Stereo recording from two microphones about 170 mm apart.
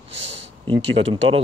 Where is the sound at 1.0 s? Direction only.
45° right (ahead or behind).